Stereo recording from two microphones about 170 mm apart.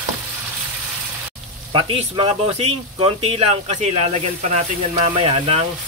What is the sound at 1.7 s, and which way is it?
Speech, 30° right (ahead or behind).